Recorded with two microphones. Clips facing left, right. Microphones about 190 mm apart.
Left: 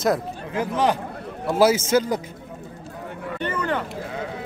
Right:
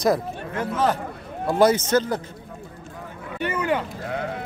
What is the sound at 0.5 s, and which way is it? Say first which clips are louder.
A man's voice: left 1 dB; 15° left (ahead or behind).